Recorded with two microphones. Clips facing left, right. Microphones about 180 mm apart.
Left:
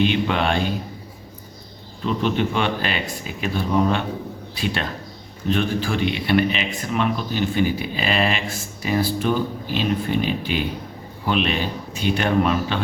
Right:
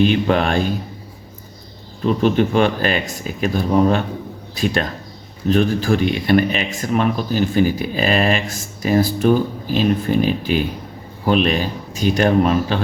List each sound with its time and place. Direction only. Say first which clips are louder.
0.0 s a man's voice: right 4 dB; 40° right (ahead or behind)
2.0 s a man's voice: right 6 dB; 45° right (ahead or behind)